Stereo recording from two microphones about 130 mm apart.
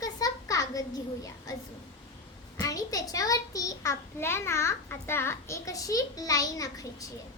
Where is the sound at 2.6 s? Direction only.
25° left (ahead or behind).